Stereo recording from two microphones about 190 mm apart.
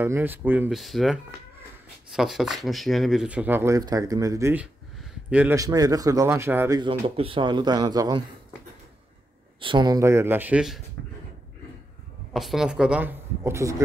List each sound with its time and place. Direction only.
0.0 s speech: 10° right (ahead or behind)
6.8 s speech: 30° right (ahead or behind)
9.6 s speech: 25° right (ahead or behind); by 10.8 s 5° right (ahead or behind)
12.3 s speech: centre (ahead or behind)